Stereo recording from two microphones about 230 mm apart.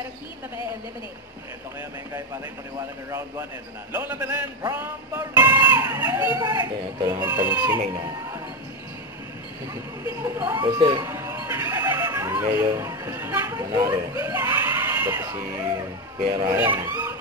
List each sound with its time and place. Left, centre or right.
3.9 s music: centre
10.2 s a sound: centre
12.5 s speech: centre
16.5 s music: centre